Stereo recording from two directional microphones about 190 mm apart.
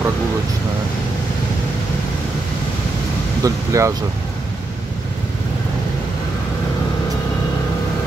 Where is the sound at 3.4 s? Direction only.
15° right (ahead or behind).